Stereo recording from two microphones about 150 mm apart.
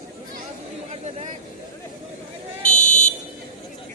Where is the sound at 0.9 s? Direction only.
50° right (ahead or behind).